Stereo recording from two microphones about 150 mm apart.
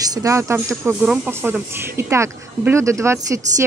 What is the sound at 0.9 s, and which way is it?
Speech, 10° right (ahead or behind).